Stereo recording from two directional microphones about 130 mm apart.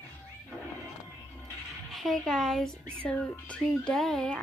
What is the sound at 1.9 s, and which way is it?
Speech, 5° left (ahead or behind).